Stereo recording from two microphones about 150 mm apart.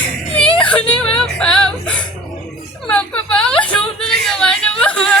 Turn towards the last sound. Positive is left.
turn(degrees=5)  # may be behind; listen again after turning